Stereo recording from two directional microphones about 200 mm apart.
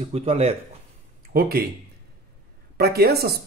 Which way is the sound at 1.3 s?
50° right (ahead or behind).